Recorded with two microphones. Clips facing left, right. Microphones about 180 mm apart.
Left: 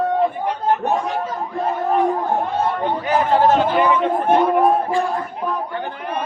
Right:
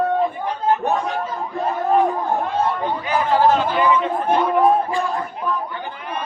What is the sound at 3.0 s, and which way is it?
Chatter, 45° left (ahead or behind).